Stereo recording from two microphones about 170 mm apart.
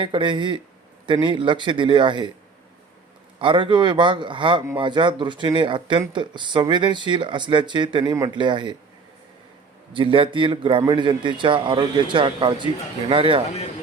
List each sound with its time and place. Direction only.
0.0 s a man's voice: 30° right (ahead or behind)
3.3 s a man's voice: 30° right (ahead or behind)
9.9 s a man's voice: 30° right (ahead or behind)